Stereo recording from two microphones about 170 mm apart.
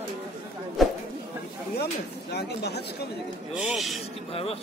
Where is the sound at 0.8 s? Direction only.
Centre (ahead or behind).